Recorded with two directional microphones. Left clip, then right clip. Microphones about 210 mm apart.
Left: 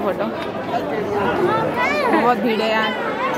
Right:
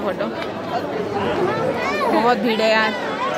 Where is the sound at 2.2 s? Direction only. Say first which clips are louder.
Even; 5° right (ahead or behind).